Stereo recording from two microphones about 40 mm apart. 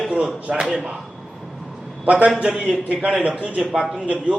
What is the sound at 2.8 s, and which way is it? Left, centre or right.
Speech, right.